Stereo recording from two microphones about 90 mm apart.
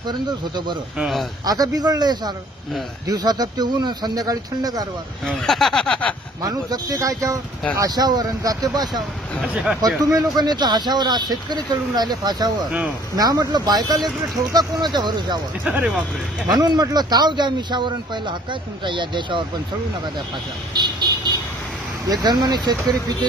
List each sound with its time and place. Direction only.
0.0 s speech: 55° right (ahead or behind)
0.9 s speech: 5° right (ahead or behind)
1.4 s speech: 45° right (ahead or behind)
5.2 s speech: 5° left (ahead or behind)
6.4 s speech: 45° right (ahead or behind)
9.4 s speech: 5° right (ahead or behind)
9.8 s speech: 45° right (ahead or behind)
16.4 s speech: 50° right (ahead or behind)
20.7 s speech: 55° right (ahead or behind)